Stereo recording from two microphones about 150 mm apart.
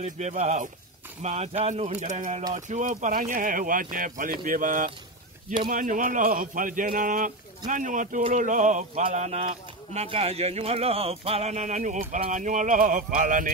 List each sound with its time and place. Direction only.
0.0 s a man's voice: 50° right (ahead or behind)